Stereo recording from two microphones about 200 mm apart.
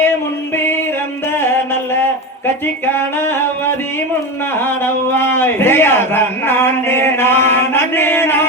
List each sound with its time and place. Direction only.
0.0 s music: 10° left (ahead or behind)
2.6 s a man's voice: 10° left (ahead or behind)